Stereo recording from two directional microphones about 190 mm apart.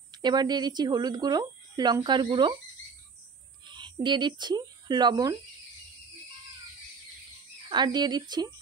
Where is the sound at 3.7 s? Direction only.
25° right (ahead or behind).